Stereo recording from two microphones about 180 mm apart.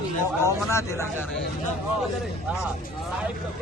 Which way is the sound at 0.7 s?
15° left (ahead or behind).